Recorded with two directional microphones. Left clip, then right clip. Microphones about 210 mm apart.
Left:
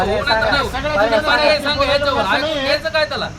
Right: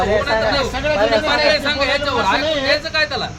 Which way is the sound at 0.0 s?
10° right (ahead or behind).